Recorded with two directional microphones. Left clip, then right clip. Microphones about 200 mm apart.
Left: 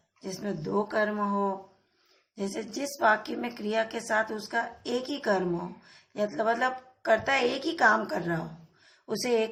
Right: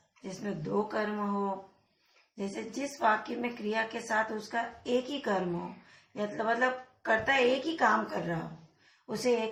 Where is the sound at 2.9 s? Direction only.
45° left (ahead or behind).